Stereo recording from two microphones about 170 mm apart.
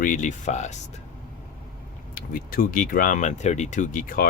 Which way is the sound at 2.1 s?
55° left (ahead or behind).